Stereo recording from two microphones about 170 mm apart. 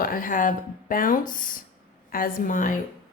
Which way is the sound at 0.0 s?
55° left (ahead or behind).